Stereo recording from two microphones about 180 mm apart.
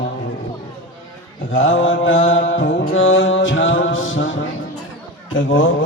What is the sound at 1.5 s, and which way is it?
Speech, 90° left.